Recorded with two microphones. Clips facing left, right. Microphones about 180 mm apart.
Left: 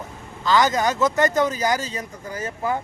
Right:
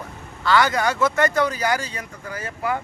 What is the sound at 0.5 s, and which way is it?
Speech, 20° left (ahead or behind).